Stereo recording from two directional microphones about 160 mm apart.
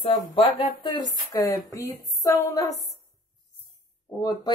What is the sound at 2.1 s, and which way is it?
Speech, 20° left (ahead or behind).